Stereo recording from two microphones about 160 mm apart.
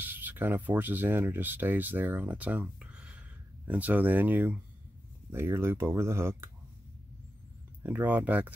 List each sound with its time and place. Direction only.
0.0 s speech: 10° right (ahead or behind)
7.8 s speech: 10° right (ahead or behind)